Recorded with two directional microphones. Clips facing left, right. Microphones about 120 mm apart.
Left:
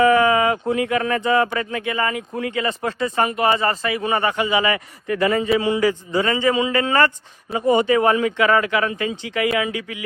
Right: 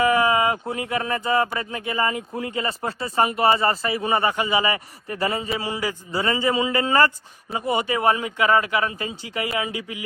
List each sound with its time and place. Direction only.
0.2 s speech: 35° right (ahead or behind)